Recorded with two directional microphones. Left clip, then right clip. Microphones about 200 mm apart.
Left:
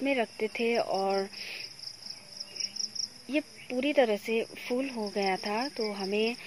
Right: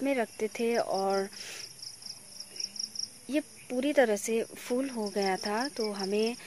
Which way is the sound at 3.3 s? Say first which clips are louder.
Even; 15° right (ahead or behind).